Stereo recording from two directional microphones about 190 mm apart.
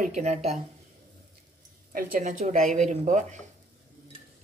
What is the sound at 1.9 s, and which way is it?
A woman's voice, 50° right (ahead or behind).